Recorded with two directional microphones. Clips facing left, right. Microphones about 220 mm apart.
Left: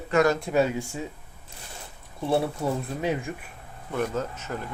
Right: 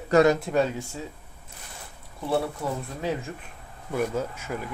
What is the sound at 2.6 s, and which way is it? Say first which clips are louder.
Speech: left 3 dB; 25° left (ahead or behind).